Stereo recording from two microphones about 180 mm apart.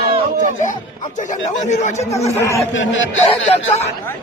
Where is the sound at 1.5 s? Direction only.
40° left (ahead or behind).